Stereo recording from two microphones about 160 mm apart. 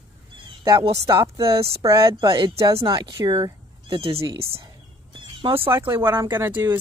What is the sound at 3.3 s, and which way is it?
Cat, 30° right (ahead or behind).